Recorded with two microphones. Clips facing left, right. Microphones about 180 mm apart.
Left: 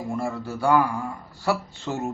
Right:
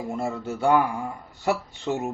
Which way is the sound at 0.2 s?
20° right (ahead or behind).